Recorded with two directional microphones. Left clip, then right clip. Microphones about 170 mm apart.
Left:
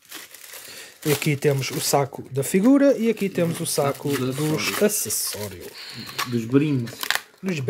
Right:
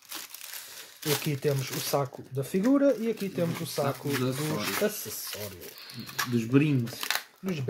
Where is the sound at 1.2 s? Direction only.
40° left (ahead or behind).